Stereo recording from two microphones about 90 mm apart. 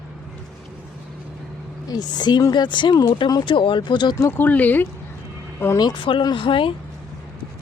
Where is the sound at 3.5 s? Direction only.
70° left (ahead or behind).